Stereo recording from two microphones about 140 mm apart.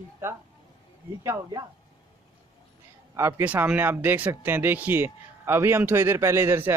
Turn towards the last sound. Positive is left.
turn(degrees=-15)  # may be behind; listen again after turning